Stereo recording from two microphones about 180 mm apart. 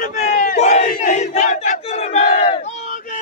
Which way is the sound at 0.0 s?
45° left (ahead or behind).